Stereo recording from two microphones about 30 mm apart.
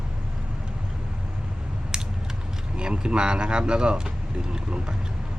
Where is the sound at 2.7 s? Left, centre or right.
Right.